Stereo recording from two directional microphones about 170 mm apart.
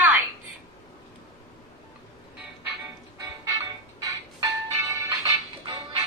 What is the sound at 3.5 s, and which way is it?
Music, 20° right (ahead or behind).